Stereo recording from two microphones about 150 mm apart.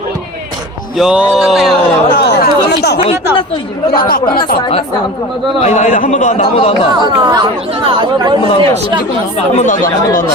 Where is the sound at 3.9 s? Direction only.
75° left (ahead or behind).